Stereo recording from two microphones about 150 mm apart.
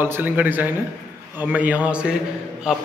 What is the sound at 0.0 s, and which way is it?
A man's voice, 15° right (ahead or behind).